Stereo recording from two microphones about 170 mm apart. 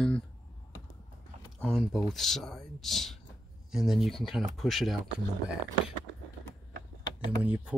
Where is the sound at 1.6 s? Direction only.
5° left (ahead or behind).